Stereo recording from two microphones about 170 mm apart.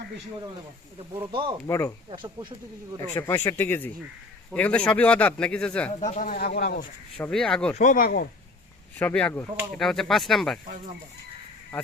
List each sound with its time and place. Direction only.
1.3 s speech: 30° right (ahead or behind)
1.6 s speech: 15° left (ahead or behind)
2.0 s speech: 25° right (ahead or behind)
3.2 s speech: 15° left (ahead or behind)
6.0 s speech: 45° left (ahead or behind)
6.3 s speech: 65° left (ahead or behind)
7.2 s speech: 5° left (ahead or behind)
7.8 s speech: 55° left (ahead or behind)
9.0 s speech: 10° left (ahead or behind)